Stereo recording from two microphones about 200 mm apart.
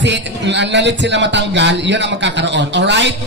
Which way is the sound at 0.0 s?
60° right (ahead or behind).